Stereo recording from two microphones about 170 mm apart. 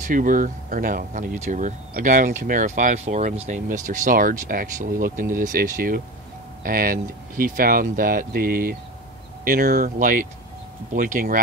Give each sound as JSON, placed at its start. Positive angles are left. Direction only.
{"t": 0.0, "sound": "speech", "side_deg": -55}